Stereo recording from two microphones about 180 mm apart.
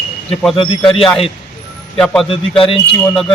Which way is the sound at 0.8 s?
25° left (ahead or behind).